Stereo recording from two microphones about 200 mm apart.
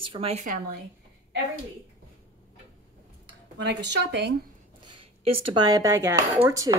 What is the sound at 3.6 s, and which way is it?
Speech, 60° right (ahead or behind).